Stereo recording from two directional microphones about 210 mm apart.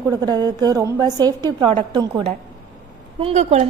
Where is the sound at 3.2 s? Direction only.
30° right (ahead or behind).